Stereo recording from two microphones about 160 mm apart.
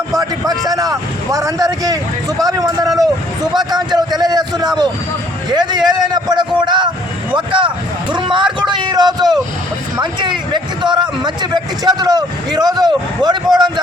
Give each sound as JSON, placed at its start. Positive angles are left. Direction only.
{"t": 0.7, "sound": "a man's voice", "side_deg": -20}